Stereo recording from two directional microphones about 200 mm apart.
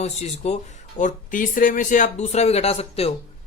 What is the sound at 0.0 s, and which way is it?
Speech, 35° left (ahead or behind).